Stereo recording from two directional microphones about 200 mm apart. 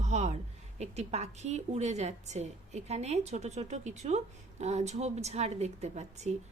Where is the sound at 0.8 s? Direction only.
35° right (ahead or behind).